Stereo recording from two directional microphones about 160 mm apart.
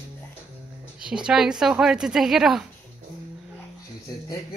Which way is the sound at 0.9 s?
5° right (ahead or behind).